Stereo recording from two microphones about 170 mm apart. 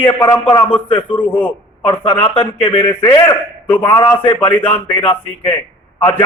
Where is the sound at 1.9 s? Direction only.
30° left (ahead or behind).